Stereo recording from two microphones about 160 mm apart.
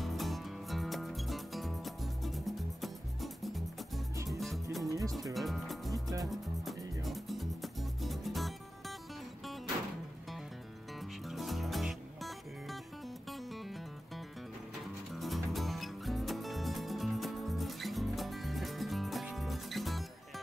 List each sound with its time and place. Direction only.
0.0 s music: centre (ahead or behind)
4.8 s music: 20° right (ahead or behind)
5.3 s music: centre (ahead or behind)
5.9 s music: 20° right (ahead or behind)
6.3 s music: centre (ahead or behind)
11.2 s music: centre (ahead or behind)
15.1 s music: centre (ahead or behind)